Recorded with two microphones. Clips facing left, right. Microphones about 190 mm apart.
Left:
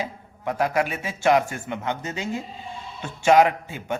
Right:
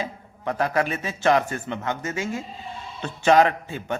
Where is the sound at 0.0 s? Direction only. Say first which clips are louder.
Even; 15° left (ahead or behind).